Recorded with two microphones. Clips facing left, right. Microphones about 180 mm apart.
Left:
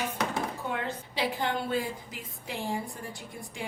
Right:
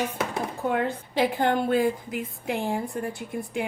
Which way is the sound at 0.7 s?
50° right (ahead or behind).